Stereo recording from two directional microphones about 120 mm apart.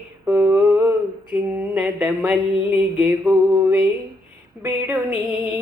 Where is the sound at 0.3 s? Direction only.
20° right (ahead or behind).